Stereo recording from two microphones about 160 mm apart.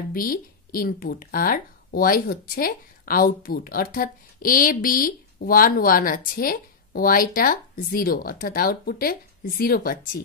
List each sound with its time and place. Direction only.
0.1 s speech: 60° left (ahead or behind)